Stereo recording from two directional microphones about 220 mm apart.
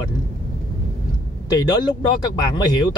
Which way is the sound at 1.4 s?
20° left (ahead or behind).